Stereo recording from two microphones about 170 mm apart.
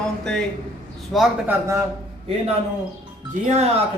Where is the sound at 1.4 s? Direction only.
15° right (ahead or behind).